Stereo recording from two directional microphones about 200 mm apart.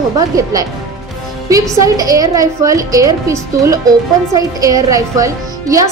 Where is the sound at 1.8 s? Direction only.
15° right (ahead or behind).